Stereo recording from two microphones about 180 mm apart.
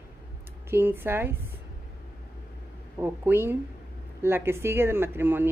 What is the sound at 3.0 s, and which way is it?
Speech, 10° right (ahead or behind).